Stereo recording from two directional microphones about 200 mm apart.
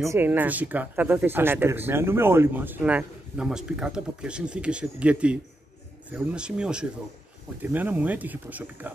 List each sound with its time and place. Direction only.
0.0 s speech: 10° right (ahead or behind)